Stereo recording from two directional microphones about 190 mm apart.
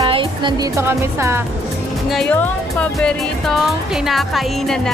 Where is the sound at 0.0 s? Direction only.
25° right (ahead or behind).